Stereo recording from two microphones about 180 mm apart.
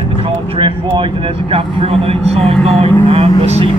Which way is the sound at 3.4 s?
35° right (ahead or behind).